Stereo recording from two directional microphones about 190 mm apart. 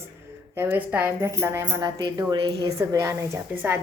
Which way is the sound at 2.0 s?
25° right (ahead or behind).